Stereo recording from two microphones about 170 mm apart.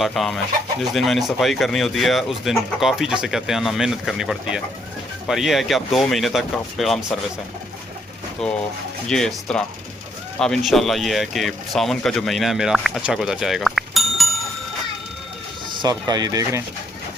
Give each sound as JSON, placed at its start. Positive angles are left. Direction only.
{"t": 0.0, "sound": "speech", "side_deg": 0}
{"t": 8.4, "sound": "speech", "side_deg": 0}
{"t": 15.8, "sound": "speech", "side_deg": -25}